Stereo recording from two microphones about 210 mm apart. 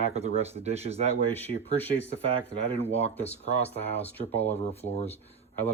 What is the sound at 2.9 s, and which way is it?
Speech, 30° left (ahead or behind).